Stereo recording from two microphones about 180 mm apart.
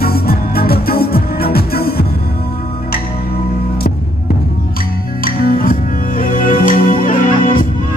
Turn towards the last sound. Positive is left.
turn(degrees=50)  # may be behind; listen again after turning